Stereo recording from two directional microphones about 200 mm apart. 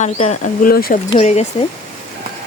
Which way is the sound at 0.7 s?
50° left (ahead or behind).